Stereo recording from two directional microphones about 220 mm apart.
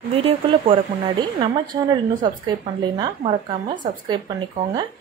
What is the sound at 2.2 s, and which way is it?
Speech, 20° right (ahead or behind).